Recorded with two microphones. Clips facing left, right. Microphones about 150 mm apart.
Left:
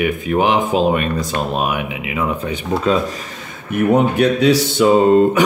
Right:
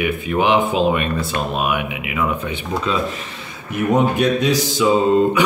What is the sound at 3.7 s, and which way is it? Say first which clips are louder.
Speech: left 3 dB; 65° left (ahead or behind).